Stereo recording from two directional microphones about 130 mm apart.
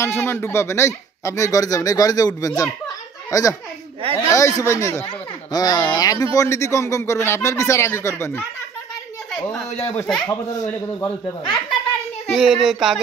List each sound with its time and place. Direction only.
0.0 s a child's voice: 20° left (ahead or behind)
9.7 s speech: 55° left (ahead or behind)
9.9 s speech: 5° left (ahead or behind)
10.5 s speech: 25° left (ahead or behind)
12.3 s a child's voice: centre (ahead or behind)